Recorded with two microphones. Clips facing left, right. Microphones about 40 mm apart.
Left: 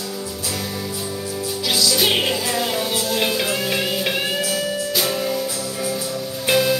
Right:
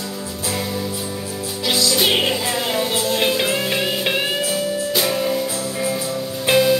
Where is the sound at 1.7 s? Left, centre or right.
Centre.